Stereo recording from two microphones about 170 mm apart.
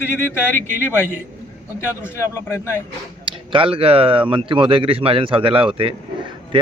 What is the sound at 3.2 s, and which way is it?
Speech, 30° right (ahead or behind).